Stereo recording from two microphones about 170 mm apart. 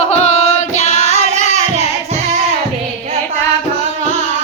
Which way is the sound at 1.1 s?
40° right (ahead or behind).